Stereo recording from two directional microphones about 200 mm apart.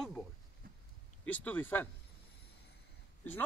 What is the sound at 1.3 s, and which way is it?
Speech, 10° left (ahead or behind).